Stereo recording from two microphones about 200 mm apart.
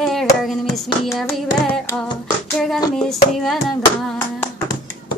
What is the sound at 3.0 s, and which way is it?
Hands, centre (ahead or behind).